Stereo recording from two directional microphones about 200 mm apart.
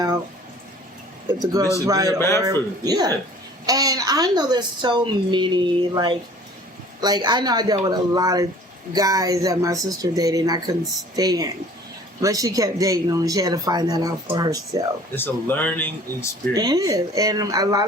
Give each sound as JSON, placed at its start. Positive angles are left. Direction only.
{"t": 1.3, "sound": "a woman's voice", "side_deg": -20}
{"t": 2.1, "sound": "speech", "side_deg": 15}
{"t": 2.4, "sound": "a woman's voice", "side_deg": -20}
{"t": 15.1, "sound": "speech", "side_deg": 10}
{"t": 16.6, "sound": "speech", "side_deg": -20}